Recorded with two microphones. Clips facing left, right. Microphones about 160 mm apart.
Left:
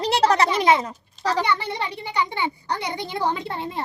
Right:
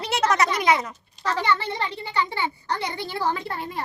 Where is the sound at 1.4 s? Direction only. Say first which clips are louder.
Even; 15° left (ahead or behind).